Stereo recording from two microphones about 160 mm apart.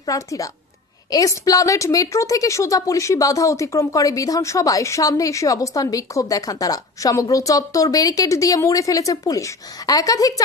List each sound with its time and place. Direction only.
0.0 s a woman's voice: 20° left (ahead or behind)